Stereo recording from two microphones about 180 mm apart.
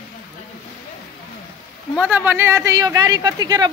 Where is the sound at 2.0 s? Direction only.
10° right (ahead or behind).